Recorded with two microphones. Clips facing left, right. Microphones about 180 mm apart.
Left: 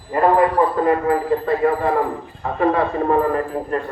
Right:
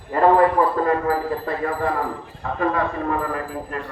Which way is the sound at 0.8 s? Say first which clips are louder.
Left 3 dB; 25° left (ahead or behind).